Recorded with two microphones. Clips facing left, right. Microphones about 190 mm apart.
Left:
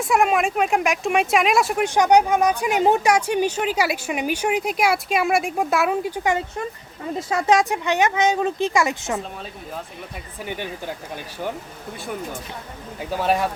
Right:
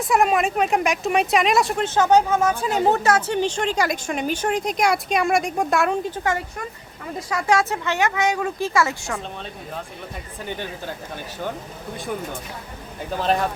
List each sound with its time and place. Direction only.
0.0 s speech: centre (ahead or behind)
1.8 s speech: 15° left (ahead or behind)
13.1 s speech: 10° left (ahead or behind)